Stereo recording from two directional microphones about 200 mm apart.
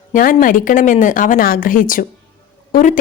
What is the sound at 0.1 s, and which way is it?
A woman's voice, 45° left (ahead or behind).